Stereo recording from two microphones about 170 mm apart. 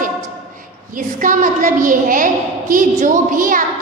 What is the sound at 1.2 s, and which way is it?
A woman's voice, 50° right (ahead or behind).